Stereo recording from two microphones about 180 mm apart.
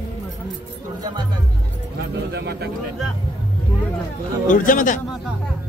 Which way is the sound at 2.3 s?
65° right (ahead or behind).